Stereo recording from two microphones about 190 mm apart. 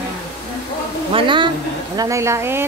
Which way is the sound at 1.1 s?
25° right (ahead or behind).